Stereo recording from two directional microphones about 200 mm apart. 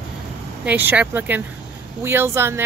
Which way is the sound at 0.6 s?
10° right (ahead or behind).